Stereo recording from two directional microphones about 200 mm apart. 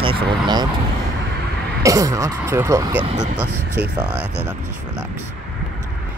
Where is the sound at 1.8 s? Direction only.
15° right (ahead or behind).